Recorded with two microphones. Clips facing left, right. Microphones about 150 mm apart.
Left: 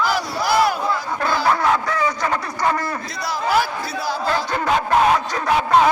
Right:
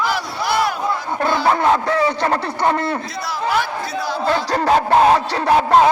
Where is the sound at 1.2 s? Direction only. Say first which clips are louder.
Right 3 dB; 25° right (ahead or behind).